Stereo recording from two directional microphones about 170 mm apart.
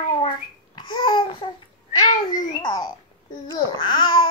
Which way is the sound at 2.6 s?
25° left (ahead or behind).